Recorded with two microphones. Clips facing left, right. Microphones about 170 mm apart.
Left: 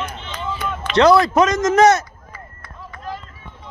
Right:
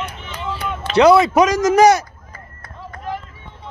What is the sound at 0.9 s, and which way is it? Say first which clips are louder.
A man's voice: right 2 dB; 5° right (ahead or behind).